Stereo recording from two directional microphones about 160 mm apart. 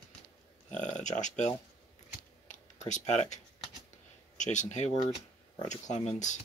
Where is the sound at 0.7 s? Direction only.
50° left (ahead or behind).